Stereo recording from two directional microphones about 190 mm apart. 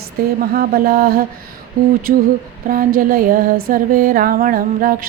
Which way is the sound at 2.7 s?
50° right (ahead or behind).